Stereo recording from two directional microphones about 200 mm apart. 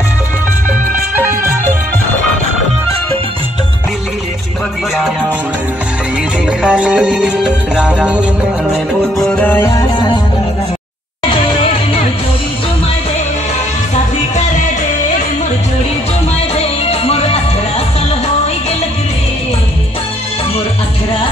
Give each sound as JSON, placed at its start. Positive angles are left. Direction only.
{"t": 4.9, "sound": "music", "side_deg": 0}
{"t": 6.6, "sound": "music", "side_deg": -5}
{"t": 9.3, "sound": "music", "side_deg": 10}
{"t": 16.8, "sound": "music", "side_deg": 30}